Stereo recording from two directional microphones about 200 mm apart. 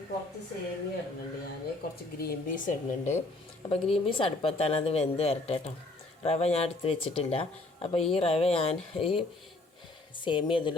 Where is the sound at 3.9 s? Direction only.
25° left (ahead or behind).